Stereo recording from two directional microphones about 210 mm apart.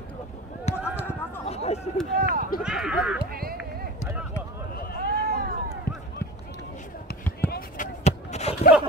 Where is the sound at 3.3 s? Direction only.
45° right (ahead or behind).